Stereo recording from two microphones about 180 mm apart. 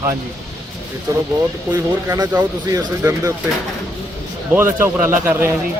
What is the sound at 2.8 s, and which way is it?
Speech, 20° right (ahead or behind).